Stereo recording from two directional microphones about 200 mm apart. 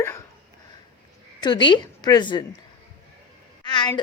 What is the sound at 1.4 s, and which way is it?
Speech, 20° left (ahead or behind).